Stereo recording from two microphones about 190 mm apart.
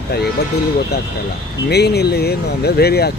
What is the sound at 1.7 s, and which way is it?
Speech, 60° left (ahead or behind).